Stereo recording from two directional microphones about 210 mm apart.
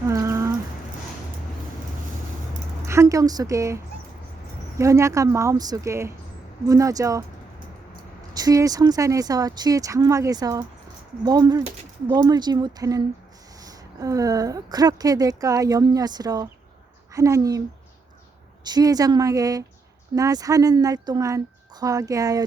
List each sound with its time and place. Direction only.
0.1 s a sound: 15° right (ahead or behind)
2.8 s a woman's voice: 15° right (ahead or behind)
4.8 s a woman's voice: 15° right (ahead or behind)
8.3 s a woman's voice: 20° right (ahead or behind)
18.6 s a woman's voice: 20° right (ahead or behind)